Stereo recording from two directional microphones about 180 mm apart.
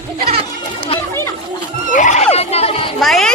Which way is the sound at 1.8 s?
45° left (ahead or behind).